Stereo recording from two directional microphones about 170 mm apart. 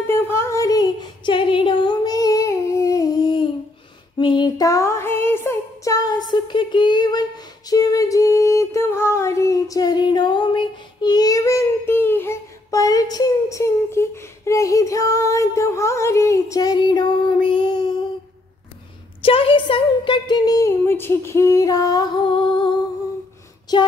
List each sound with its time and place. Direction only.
0.0 s a sound: 15° left (ahead or behind)
17.5 s child singing: 25° left (ahead or behind)
19.2 s speech: 30° left (ahead or behind)